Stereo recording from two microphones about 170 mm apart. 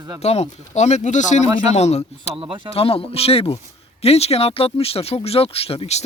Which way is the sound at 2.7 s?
35° left (ahead or behind).